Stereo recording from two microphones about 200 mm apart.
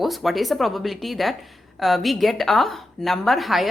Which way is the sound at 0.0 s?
Centre (ahead or behind).